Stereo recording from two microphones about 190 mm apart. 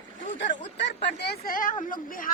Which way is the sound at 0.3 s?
65° left (ahead or behind).